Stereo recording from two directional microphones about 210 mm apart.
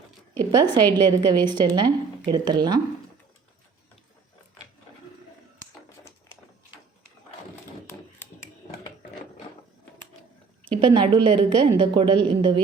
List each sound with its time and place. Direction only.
0.3 s a woman's voice: 20° right (ahead or behind)
10.8 s a woman's voice: 25° right (ahead or behind)